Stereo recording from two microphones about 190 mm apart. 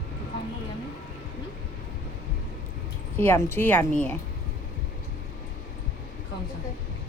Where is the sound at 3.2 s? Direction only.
10° left (ahead or behind).